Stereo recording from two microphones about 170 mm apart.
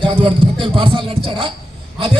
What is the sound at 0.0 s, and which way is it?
Music, 30° right (ahead or behind).